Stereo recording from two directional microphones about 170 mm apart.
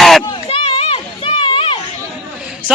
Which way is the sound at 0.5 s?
35° left (ahead or behind).